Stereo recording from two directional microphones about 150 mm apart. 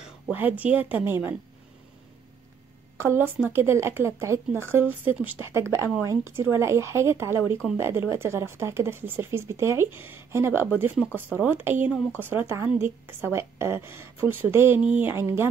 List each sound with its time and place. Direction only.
0.0 s a woman's voice: 10° right (ahead or behind)
3.0 s a woman's voice: 15° right (ahead or behind)